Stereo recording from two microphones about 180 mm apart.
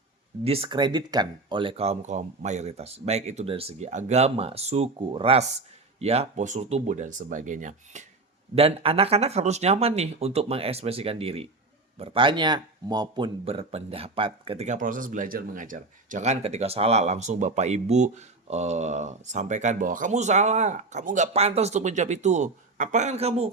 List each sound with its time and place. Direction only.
0.4 s speech: 30° right (ahead or behind)
8.5 s speech: 30° right (ahead or behind)